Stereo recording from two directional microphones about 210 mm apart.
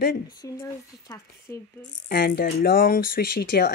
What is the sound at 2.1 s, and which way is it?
Speech, 45° left (ahead or behind).